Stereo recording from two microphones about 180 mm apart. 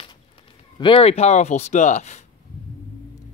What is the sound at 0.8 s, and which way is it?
A man's voice, 30° left (ahead or behind).